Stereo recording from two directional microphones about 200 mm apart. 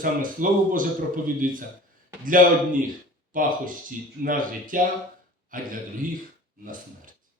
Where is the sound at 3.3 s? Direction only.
40° right (ahead or behind).